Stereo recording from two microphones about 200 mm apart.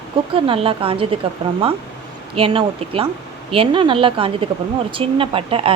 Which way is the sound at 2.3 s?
25° right (ahead or behind).